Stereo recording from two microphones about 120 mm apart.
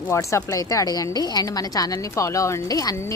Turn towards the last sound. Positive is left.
turn(degrees=25)  # may be behind; listen again after turning